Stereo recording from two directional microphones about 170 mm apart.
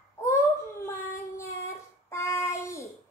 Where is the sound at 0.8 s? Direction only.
15° left (ahead or behind).